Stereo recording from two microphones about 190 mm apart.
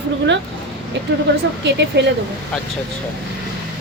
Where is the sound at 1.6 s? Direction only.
65° right (ahead or behind).